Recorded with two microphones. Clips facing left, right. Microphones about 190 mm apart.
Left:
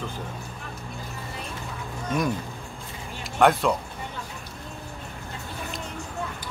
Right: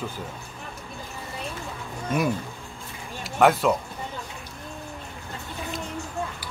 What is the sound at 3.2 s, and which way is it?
Speech, centre (ahead or behind).